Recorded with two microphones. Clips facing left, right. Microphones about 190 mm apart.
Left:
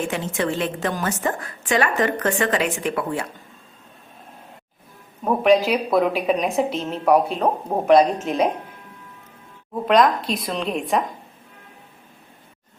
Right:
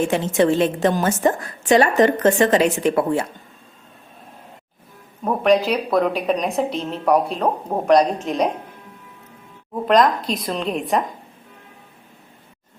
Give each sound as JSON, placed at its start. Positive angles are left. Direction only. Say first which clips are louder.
{"t": 0.1, "sound": "a woman's voice", "louder": "right 7 dB", "side_deg": -25}
{"t": 1.6, "sound": "a woman's voice", "louder": "right 6 dB", "side_deg": -40}
{"t": 2.0, "sound": "a woman's voice", "louder": "right 6 dB", "side_deg": -25}
{"t": 5.2, "sound": "a woman's voice", "louder": "even", "side_deg": 0}
{"t": 9.8, "sound": "a woman's voice", "louder": "right 1 dB", "side_deg": 0}